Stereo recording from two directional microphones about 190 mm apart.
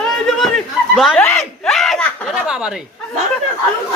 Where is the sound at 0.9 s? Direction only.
Centre (ahead or behind).